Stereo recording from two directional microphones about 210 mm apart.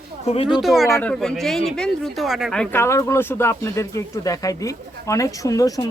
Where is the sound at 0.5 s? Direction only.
Centre (ahead or behind).